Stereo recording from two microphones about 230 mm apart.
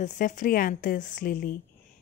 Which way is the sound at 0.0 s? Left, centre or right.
Left.